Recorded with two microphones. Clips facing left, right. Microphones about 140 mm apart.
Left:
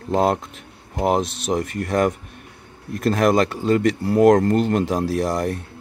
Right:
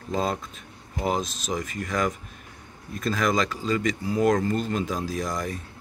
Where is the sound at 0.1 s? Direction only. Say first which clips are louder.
Left 8 dB; 70° left (ahead or behind).